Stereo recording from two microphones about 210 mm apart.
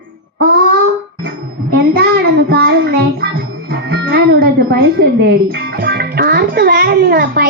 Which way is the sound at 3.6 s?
50° right (ahead or behind).